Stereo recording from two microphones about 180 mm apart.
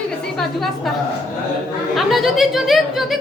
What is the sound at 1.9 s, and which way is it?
A woman's voice, centre (ahead or behind).